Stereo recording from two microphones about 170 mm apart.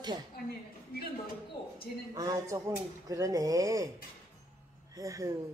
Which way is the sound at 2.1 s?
20° right (ahead or behind).